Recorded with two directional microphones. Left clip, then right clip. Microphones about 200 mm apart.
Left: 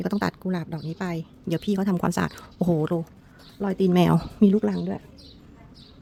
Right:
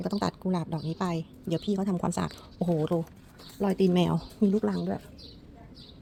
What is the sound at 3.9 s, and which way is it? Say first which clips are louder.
A woman's voice: left 6 dB; 30° left (ahead or behind).